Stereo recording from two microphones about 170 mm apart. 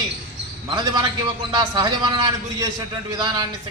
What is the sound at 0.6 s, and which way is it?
A man's voice, 25° right (ahead or behind).